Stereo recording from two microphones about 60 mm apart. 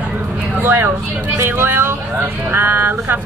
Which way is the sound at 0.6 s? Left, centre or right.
Right.